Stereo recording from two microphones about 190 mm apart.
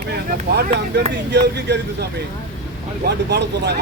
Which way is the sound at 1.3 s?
65° right (ahead or behind).